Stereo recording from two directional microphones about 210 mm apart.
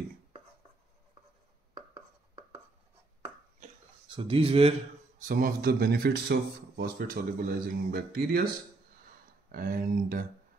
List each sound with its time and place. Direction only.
3.5 s a sound: 30° right (ahead or behind)
5.2 s speech: 40° right (ahead or behind)
9.5 s speech: 40° right (ahead or behind)